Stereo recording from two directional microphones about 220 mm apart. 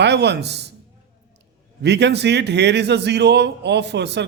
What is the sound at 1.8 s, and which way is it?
A man's voice, 50° right (ahead or behind).